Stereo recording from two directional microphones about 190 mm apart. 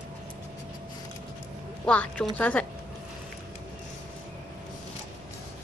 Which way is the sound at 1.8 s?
5° left (ahead or behind).